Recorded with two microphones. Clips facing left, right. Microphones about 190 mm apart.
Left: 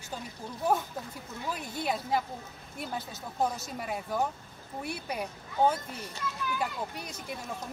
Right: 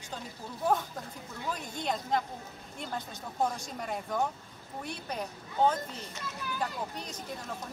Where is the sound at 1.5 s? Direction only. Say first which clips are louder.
Left 1 dB; 5° left (ahead or behind).